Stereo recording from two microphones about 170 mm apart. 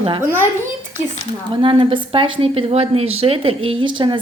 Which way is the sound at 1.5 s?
30° right (ahead or behind).